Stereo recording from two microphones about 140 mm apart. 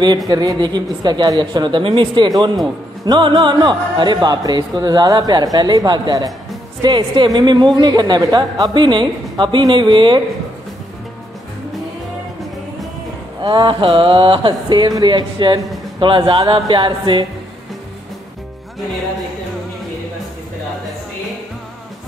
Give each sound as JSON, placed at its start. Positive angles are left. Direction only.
{"t": 0.3, "sound": "speech", "side_deg": -30}
{"t": 13.4, "sound": "speech", "side_deg": -30}